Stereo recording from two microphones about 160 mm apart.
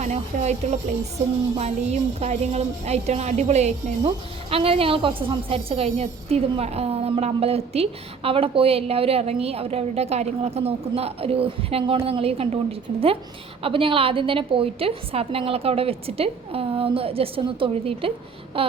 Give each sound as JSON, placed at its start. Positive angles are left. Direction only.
{"t": 0.0, "sound": "speech", "side_deg": -45}